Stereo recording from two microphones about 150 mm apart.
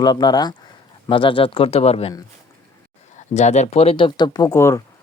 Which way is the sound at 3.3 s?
50° left (ahead or behind).